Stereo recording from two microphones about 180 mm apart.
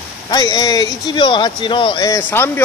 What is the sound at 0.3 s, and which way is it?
Speech, 20° left (ahead or behind).